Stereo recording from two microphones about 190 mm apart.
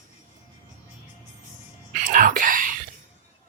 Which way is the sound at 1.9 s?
45° right (ahead or behind).